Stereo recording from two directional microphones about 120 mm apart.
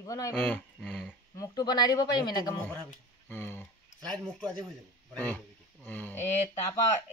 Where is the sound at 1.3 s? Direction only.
35° left (ahead or behind).